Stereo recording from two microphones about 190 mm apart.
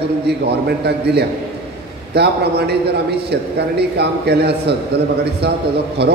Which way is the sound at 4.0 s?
60° right (ahead or behind).